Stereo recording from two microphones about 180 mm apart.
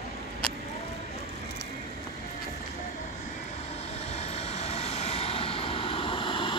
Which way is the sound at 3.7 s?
35° left (ahead or behind).